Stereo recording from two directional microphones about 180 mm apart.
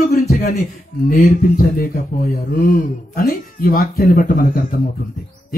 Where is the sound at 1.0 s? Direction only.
50° left (ahead or behind).